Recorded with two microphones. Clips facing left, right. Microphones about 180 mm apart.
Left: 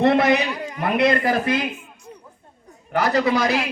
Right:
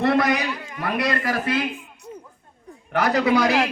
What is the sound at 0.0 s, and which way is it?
A man's voice, 25° left (ahead or behind).